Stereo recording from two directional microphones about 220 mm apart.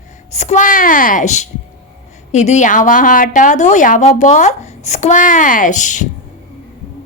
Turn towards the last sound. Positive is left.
turn(degrees=35)  # may be behind; listen again after turning